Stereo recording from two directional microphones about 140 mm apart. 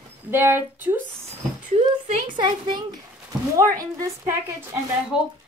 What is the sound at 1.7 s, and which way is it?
Speech, 55° right (ahead or behind).